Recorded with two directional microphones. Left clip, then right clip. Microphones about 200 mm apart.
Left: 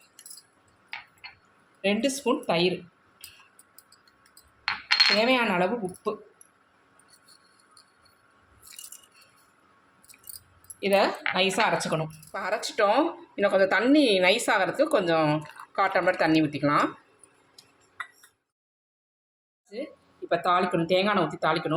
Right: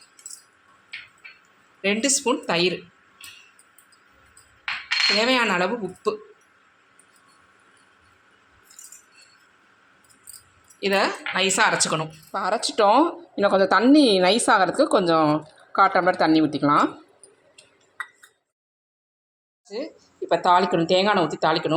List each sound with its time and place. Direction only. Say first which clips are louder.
1.8 s speech: right 4 dB; 5° right (ahead or behind)
5.2 s speech: right 3 dB; 5° right (ahead or behind)
10.8 s speech: right 1 dB; centre (ahead or behind)
12.3 s speech: right 6 dB; 25° right (ahead or behind)
19.7 s speech: right 5 dB; 20° right (ahead or behind)